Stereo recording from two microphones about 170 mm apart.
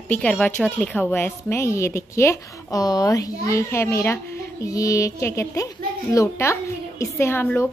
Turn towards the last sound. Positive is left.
turn(degrees=15)  # may be behind; listen again after turning